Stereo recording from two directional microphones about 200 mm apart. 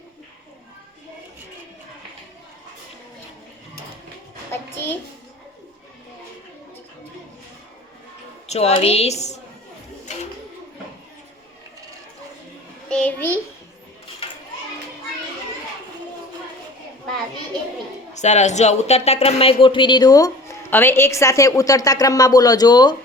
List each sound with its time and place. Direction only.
4.5 s child singing: 10° left (ahead or behind)
8.4 s a woman's voice: 30° left (ahead or behind)
12.9 s a sound: 5° left (ahead or behind)
18.1 s speech: 35° left (ahead or behind)